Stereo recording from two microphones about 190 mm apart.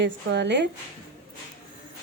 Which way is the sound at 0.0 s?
65° right (ahead or behind).